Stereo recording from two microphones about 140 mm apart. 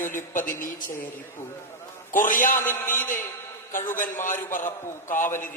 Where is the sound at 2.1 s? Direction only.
70° left (ahead or behind).